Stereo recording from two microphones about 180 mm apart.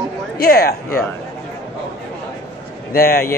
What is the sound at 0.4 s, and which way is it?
Speech, 55° left (ahead or behind).